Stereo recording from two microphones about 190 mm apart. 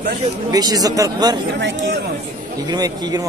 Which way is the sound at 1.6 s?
65° right (ahead or behind).